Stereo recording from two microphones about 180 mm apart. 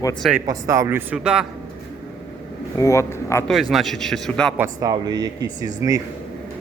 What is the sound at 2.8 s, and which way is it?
Speech, 15° left (ahead or behind).